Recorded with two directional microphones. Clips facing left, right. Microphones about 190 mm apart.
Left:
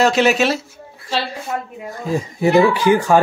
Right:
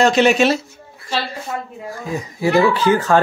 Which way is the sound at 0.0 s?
5° left (ahead or behind).